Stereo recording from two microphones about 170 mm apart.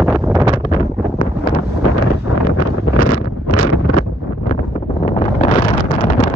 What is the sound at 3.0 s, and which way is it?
Wind noise, 60° left (ahead or behind).